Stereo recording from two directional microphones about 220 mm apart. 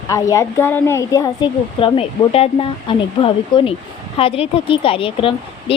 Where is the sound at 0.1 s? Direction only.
15° left (ahead or behind).